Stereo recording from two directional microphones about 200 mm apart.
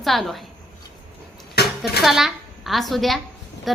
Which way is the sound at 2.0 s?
Centre (ahead or behind).